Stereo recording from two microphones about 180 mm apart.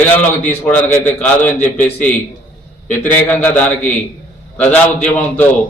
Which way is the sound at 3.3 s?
10° left (ahead or behind).